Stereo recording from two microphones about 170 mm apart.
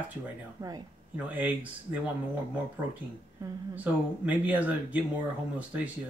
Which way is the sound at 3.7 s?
10° right (ahead or behind).